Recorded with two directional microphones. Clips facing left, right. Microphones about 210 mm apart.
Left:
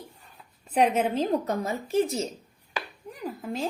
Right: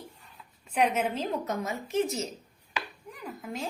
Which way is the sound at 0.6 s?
35° left (ahead or behind).